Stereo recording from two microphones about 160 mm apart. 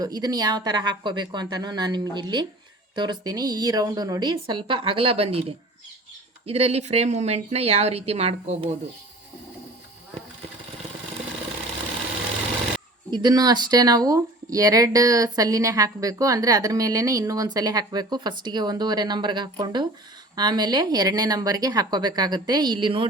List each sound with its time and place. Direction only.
0.0 s speech: 25° right (ahead or behind); by 8.7 s 40° right (ahead or behind)
13.1 s speech: 25° right (ahead or behind)